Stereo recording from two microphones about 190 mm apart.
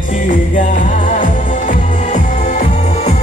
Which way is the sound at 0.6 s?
40° left (ahead or behind).